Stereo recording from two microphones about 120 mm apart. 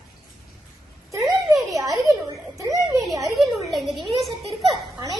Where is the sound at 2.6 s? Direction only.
30° right (ahead or behind).